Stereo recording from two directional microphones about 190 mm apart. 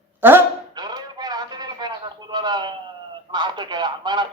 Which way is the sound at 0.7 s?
20° right (ahead or behind).